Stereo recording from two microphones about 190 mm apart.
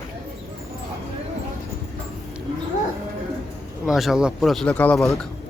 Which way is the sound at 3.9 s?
Centre (ahead or behind).